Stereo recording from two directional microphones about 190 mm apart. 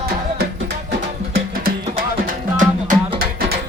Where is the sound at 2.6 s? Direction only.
45° right (ahead or behind).